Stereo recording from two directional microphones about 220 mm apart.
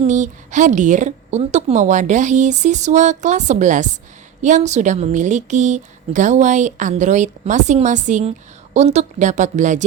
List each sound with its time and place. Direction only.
0.0 s a woman's voice: 35° right (ahead or behind)